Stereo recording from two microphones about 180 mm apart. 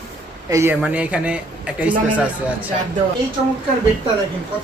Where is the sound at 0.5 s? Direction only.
10° right (ahead or behind).